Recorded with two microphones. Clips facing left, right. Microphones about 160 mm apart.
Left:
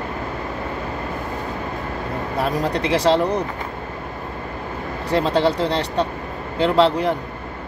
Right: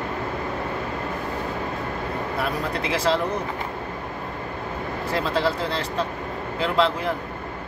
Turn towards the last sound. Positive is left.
turn(degrees=35)  # may be behind; listen again after turning